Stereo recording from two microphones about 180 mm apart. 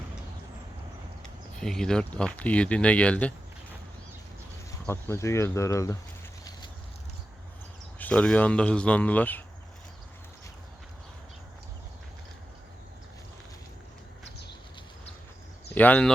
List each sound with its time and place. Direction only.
1.5 s speech: 5° left (ahead or behind)
4.9 s speech: 15° left (ahead or behind)
7.9 s speech: 10° left (ahead or behind)
15.7 s speech: 10° left (ahead or behind)